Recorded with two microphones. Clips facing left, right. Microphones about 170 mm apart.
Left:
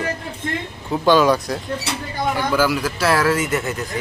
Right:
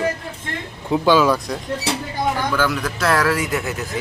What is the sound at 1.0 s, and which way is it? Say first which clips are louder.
Speech: left 2 dB; 5° right (ahead or behind).